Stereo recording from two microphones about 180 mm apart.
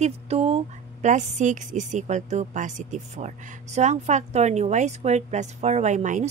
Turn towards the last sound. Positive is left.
turn(degrees=-45)  # may be behind; listen again after turning